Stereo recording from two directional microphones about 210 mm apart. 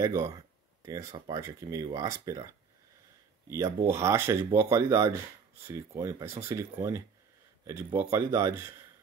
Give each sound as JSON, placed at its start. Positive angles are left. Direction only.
{"t": 0.0, "sound": "speech", "side_deg": -15}
{"t": 3.4, "sound": "speech", "side_deg": -15}